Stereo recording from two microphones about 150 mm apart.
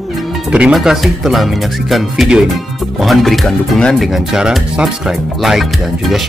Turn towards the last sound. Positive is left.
turn(degrees=0)  # may be behind; listen again after turning